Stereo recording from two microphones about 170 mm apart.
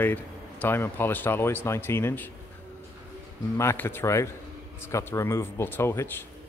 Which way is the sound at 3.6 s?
15° left (ahead or behind).